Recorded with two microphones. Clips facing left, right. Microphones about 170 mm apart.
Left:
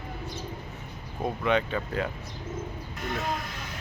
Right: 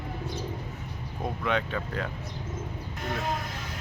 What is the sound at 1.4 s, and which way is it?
Speech, centre (ahead or behind).